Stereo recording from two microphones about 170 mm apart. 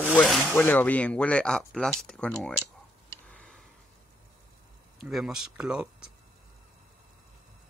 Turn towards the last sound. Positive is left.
turn(degrees=-5)  # may be behind; listen again after turning